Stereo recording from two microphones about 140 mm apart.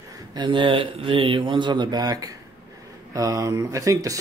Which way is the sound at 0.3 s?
35° right (ahead or behind).